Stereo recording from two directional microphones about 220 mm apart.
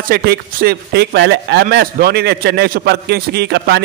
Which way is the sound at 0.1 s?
45° right (ahead or behind).